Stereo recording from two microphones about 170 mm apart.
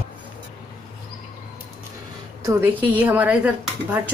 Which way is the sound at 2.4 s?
15° right (ahead or behind).